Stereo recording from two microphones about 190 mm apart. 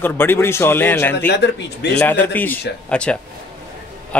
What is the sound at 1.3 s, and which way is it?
Speech, 65° left (ahead or behind).